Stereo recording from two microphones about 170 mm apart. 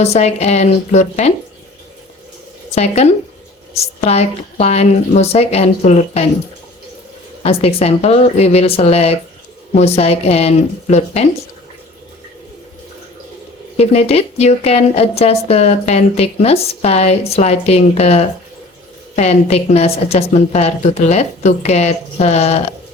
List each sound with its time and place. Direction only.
0.0 s a woman's voice: 40° left (ahead or behind)
2.7 s a woman's voice: 40° left (ahead or behind)
7.4 s a woman's voice: 35° left (ahead or behind)
13.7 s a woman's voice: 35° left (ahead or behind)